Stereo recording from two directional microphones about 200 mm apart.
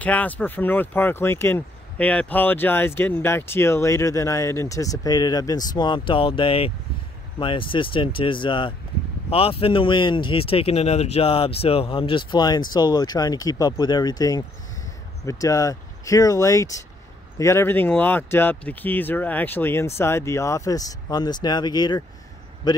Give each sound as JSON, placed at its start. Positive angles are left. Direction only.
{"t": 0.0, "sound": "speech", "side_deg": 5}